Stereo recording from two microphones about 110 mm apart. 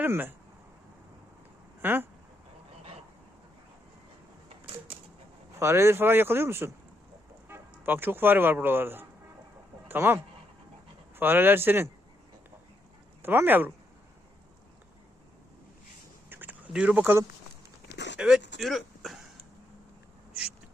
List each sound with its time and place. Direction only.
0.0 s speech: 20° right (ahead or behind)
1.8 s speech: 20° right (ahead or behind)
4.4 s a sound: 55° right (ahead or behind)
5.5 s speech: 25° right (ahead or behind)
13.2 s speech: 20° right (ahead or behind)
16.3 s duck: 15° right (ahead or behind)
18.2 s speech: 5° right (ahead or behind)